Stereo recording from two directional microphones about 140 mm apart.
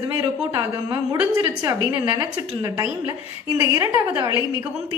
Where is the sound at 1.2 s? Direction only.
10° right (ahead or behind).